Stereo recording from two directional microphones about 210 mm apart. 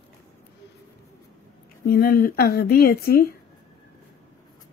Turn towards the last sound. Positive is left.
turn(degrees=45)  # may be behind; listen again after turning